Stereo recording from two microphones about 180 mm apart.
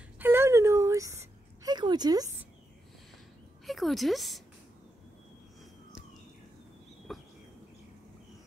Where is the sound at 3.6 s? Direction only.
Centre (ahead or behind).